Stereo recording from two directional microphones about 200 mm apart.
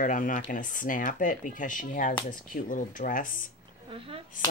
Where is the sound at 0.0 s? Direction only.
40° left (ahead or behind).